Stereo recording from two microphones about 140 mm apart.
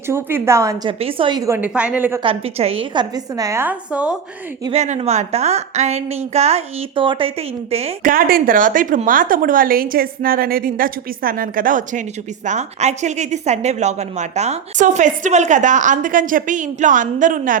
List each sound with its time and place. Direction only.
0.1 s a woman's voice: 15° right (ahead or behind)
0.9 s a woman's voice: 40° right (ahead or behind)
1.4 s a woman's voice: 15° right (ahead or behind)
2.2 s a woman's voice: 45° right (ahead or behind); by 4.2 s 10° right (ahead or behind)
4.7 s a woman's voice: 50° right (ahead or behind)
6.9 s a woman's voice: 35° right (ahead or behind)
7.7 s a woman's voice: 45° right (ahead or behind)
8.0 s a woman's voice: 90° right
12.5 s a woman's voice: 55° right (ahead or behind); by 17.6 s 70° right (ahead or behind)